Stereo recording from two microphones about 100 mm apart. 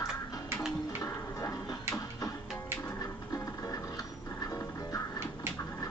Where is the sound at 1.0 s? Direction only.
30° left (ahead or behind).